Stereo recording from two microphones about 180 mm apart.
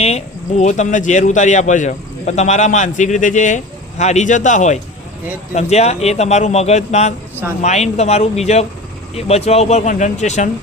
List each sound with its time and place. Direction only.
0.0 s speech: 40° left (ahead or behind)